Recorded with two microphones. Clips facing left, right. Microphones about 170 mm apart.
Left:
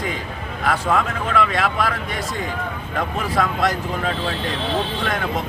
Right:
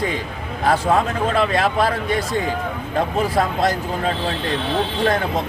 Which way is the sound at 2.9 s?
35° right (ahead or behind).